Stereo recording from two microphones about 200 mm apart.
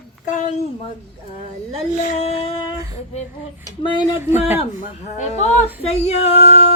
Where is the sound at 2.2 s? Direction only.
30° left (ahead or behind).